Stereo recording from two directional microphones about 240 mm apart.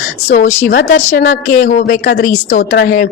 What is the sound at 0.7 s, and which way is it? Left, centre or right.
A woman's voice, left.